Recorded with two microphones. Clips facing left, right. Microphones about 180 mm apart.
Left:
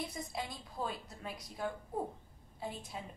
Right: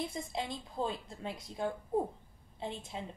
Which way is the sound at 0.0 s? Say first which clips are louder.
Right 3 dB; 25° right (ahead or behind).